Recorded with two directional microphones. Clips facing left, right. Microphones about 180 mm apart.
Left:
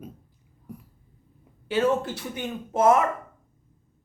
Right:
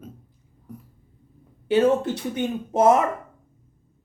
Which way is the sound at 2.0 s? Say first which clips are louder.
Right 7 dB; 20° right (ahead or behind).